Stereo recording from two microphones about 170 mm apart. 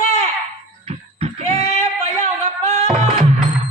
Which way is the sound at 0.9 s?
40° right (ahead or behind).